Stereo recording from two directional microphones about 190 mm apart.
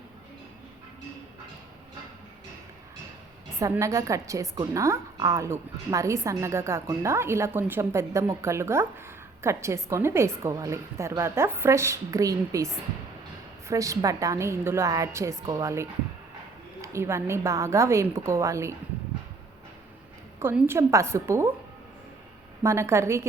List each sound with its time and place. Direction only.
3.6 s a woman's voice: 15° right (ahead or behind)
20.4 s a woman's voice: 10° right (ahead or behind)
22.6 s a woman's voice: 15° right (ahead or behind)